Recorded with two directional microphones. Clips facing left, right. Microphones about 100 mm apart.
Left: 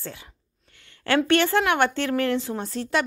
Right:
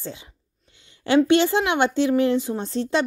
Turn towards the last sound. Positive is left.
turn(degrees=-25)  # may be behind; listen again after turning